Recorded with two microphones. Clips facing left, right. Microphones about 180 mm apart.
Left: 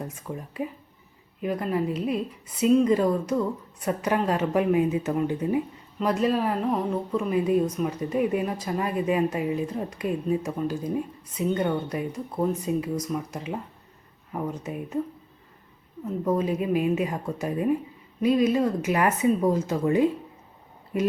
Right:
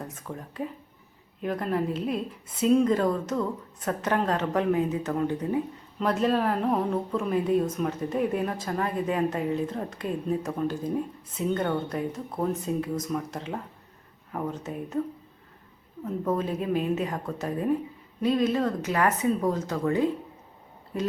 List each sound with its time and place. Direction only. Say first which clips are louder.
1.4 s speech: left 1 dB; 5° left (ahead or behind)
6.0 s speech: left 1 dB; 5° left (ahead or behind)
14.6 s speech: left 1 dB; 10° left (ahead or behind)
16.0 s speech: left 3 dB; 10° left (ahead or behind)